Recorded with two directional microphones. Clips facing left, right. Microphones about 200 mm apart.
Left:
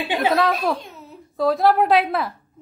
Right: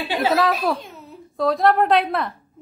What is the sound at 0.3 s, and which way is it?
A child's voice, centre (ahead or behind).